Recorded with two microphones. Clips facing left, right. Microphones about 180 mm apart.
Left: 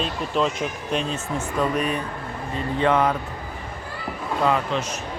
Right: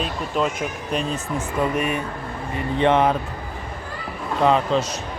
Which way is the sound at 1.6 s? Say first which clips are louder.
Right 1 dB; 10° right (ahead or behind).